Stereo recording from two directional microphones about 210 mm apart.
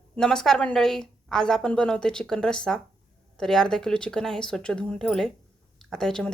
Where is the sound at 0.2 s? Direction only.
Centre (ahead or behind).